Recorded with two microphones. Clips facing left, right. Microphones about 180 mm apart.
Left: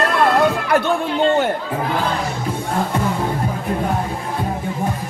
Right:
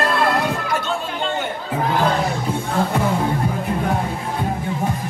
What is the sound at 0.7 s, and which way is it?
Chatter, 60° left (ahead or behind).